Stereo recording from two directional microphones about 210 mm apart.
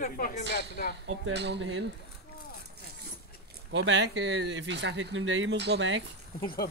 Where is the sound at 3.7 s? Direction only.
60° right (ahead or behind).